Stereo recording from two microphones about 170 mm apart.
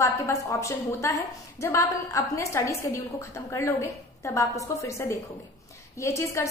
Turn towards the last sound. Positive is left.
turn(degrees=15)  # may be behind; listen again after turning